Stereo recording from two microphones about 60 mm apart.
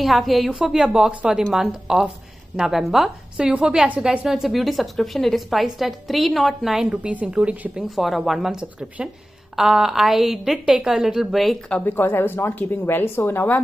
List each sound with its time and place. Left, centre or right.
0.0 s a woman's voice: centre
3.3 s a woman's voice: centre
7.9 s a woman's voice: centre
11.8 s a woman's voice: left